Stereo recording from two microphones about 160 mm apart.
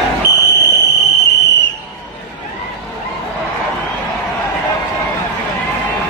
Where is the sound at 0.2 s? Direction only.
90° left.